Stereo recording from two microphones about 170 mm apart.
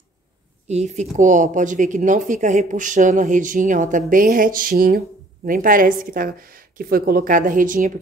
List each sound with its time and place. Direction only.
0.7 s speech: 40° right (ahead or behind)